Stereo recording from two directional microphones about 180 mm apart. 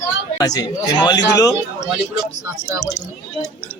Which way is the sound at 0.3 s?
20° left (ahead or behind).